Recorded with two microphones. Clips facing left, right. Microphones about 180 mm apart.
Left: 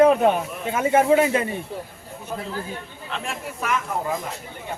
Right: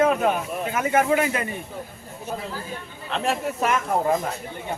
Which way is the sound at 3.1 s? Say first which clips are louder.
Right 7 dB; 40° right (ahead or behind).